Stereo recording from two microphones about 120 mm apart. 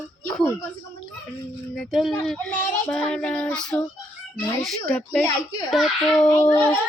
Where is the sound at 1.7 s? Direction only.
Centre (ahead or behind).